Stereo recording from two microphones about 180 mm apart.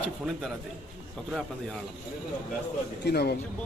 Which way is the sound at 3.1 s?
65° left (ahead or behind).